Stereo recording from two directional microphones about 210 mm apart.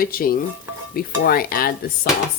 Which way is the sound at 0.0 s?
45° left (ahead or behind).